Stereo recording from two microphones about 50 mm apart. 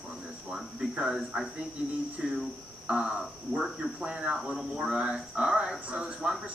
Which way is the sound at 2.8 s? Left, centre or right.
Centre.